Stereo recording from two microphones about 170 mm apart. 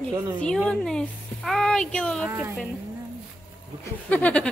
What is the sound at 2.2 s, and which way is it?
Speech, 10° right (ahead or behind).